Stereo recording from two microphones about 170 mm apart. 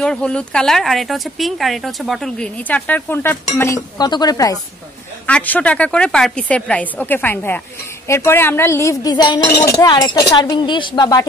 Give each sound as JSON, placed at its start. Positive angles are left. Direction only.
{"t": 0.0, "sound": "speech", "side_deg": 5}
{"t": 5.2, "sound": "a woman's voice", "side_deg": 10}